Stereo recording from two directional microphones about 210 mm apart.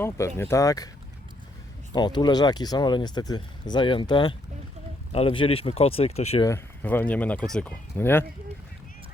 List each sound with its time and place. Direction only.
0.0 s speech: 10° left (ahead or behind)
1.9 s speech: 20° left (ahead or behind)
6.4 s speech: 10° left (ahead or behind)